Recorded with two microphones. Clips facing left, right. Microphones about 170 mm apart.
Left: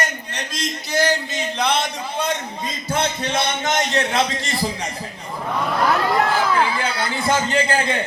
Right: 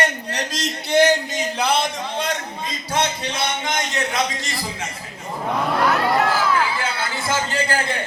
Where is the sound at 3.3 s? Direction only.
40° left (ahead or behind).